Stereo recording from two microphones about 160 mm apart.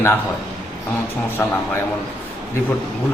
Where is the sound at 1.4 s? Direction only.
15° left (ahead or behind).